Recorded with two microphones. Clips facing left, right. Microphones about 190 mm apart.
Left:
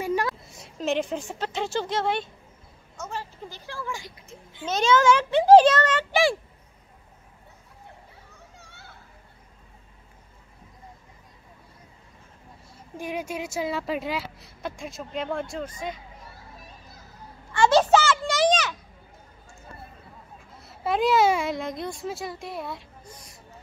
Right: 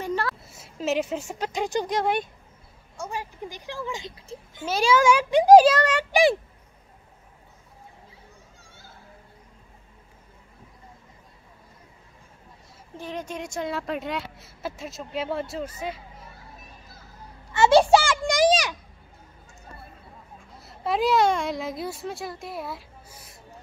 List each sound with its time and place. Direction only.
0.0 s a sound: 15° left (ahead or behind)
0.5 s a child's voice: centre (ahead or behind); by 4.2 s 20° right (ahead or behind)
4.6 s a child's voice: 10° right (ahead or behind)
8.5 s children playing: 70° left (ahead or behind)
12.9 s speech: 10° left (ahead or behind); by 16.0 s 5° right (ahead or behind)
17.5 s children playing: 10° right (ahead or behind)
20.5 s speech: centre (ahead or behind)